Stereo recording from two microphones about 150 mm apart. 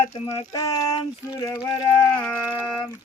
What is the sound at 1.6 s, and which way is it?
Speech, 40° left (ahead or behind).